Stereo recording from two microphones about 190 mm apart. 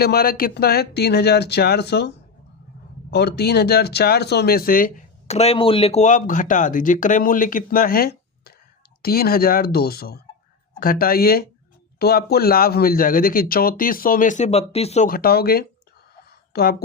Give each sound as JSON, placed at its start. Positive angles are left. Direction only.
{"t": 0.0, "sound": "speech", "side_deg": 55}
{"t": 5.3, "sound": "speech", "side_deg": 35}
{"t": 15.1, "sound": "speech", "side_deg": 55}